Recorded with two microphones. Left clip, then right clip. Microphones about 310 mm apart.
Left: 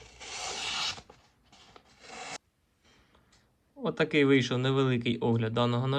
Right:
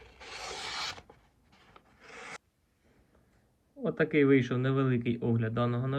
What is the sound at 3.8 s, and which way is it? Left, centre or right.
Speech, centre.